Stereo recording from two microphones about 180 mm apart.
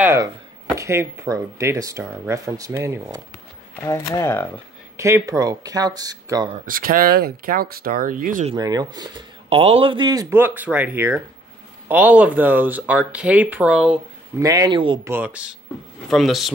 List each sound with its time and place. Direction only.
0.0 s speech: 15° right (ahead or behind)
3.8 s speech: 15° left (ahead or behind)
4.9 s speech: 15° right (ahead or behind)
6.6 s speech: 50° right (ahead or behind)
8.5 s speech: 20° right (ahead or behind)
10.3 s speech: 10° right (ahead or behind)
14.4 s speech: 20° right (ahead or behind)
15.0 s speech: 10° right (ahead or behind)